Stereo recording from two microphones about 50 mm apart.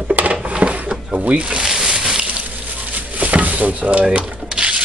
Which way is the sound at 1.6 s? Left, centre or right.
Centre.